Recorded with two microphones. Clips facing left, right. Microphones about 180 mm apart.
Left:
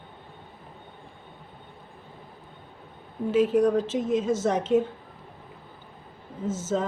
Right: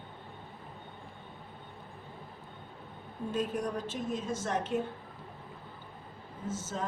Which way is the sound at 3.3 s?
90° left.